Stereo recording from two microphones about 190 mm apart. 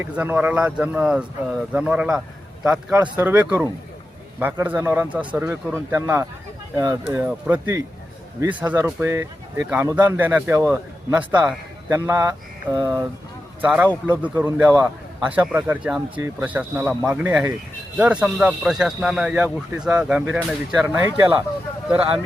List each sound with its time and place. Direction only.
0.0 s speech: 10° right (ahead or behind)